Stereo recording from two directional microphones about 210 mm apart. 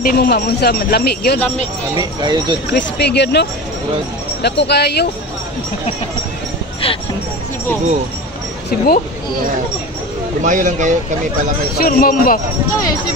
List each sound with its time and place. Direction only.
0.0 s speech: 45° left (ahead or behind)
2.0 s speech: 20° right (ahead or behind)
2.7 s speech: 50° left (ahead or behind)
8.6 s speech: 45° left (ahead or behind)
10.4 s speech: 35° right (ahead or behind)
11.8 s speech: 45° left (ahead or behind)